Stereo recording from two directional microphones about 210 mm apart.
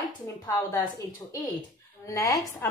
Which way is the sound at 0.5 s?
15° left (ahead or behind).